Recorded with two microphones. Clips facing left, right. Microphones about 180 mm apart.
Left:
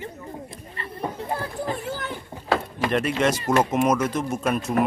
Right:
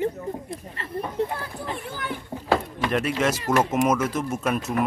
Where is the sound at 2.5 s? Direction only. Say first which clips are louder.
Even; centre (ahead or behind).